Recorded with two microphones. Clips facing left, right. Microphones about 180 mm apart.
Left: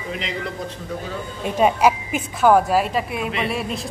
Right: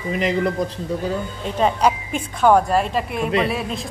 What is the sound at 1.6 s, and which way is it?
Speech, 10° left (ahead or behind).